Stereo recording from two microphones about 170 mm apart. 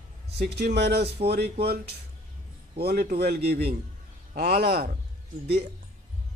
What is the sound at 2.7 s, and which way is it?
Speech, 65° right (ahead or behind).